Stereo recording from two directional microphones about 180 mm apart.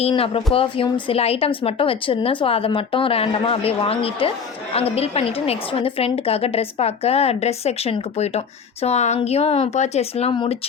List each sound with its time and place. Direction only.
0.0 s a woman's voice: 30° left (ahead or behind)